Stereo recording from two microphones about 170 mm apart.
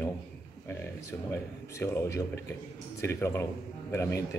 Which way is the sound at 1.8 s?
15° left (ahead or behind).